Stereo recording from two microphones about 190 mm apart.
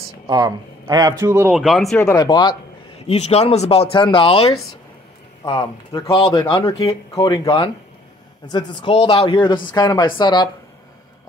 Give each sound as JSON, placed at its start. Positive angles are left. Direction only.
{"t": 0.3, "sound": "a man's voice", "side_deg": -20}
{"t": 2.0, "sound": "speech", "side_deg": 20}
{"t": 3.1, "sound": "speech", "side_deg": 35}
{"t": 6.5, "sound": "speech", "side_deg": 15}